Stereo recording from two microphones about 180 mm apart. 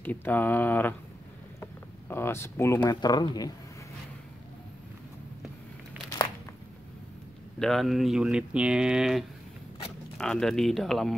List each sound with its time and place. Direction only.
0.0 s speech: 10° left (ahead or behind)
1.6 s a sound: 10° left (ahead or behind)
2.8 s speech: 25° left (ahead or behind)
7.5 s speech: centre (ahead or behind)